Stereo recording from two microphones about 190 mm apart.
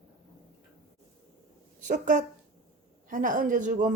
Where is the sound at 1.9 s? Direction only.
45° right (ahead or behind).